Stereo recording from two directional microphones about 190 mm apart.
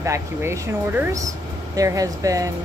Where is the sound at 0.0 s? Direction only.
15° right (ahead or behind).